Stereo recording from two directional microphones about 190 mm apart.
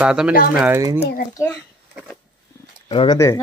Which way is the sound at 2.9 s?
30° left (ahead or behind).